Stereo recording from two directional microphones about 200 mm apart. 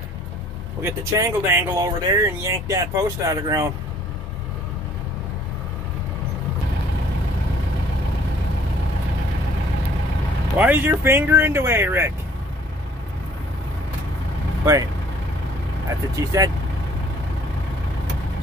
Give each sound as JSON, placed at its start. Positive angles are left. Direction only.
{"t": 0.8, "sound": "speech", "side_deg": -15}
{"t": 10.6, "sound": "speech", "side_deg": -10}
{"t": 14.6, "sound": "speech", "side_deg": -15}
{"t": 16.2, "sound": "speech", "side_deg": -15}